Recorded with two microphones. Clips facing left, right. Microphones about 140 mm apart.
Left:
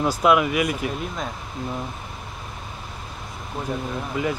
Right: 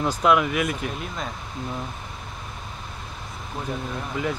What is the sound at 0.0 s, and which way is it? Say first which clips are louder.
Speech: left 2 dB; 5° left (ahead or behind).